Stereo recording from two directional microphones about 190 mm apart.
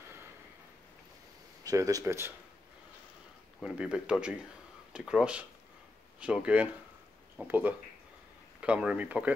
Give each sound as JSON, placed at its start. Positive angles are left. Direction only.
{"t": 1.6, "sound": "speech", "side_deg": -20}
{"t": 3.6, "sound": "speech", "side_deg": -5}